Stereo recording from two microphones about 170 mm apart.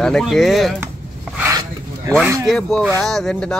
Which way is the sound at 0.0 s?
Centre (ahead or behind).